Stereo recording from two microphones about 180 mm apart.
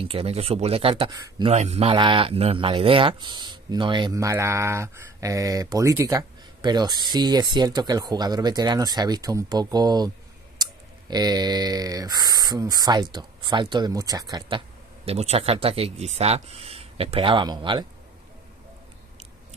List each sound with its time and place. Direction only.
0.0 s speech: 30° right (ahead or behind)
1.1 s a man's voice: 20° right (ahead or behind)
1.5 s a man's voice: 40° right (ahead or behind); by 14.6 s 20° right (ahead or behind)
15.0 s speech: 35° right (ahead or behind)